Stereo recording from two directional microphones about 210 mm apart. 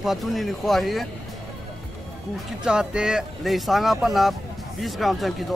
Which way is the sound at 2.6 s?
5° right (ahead or behind).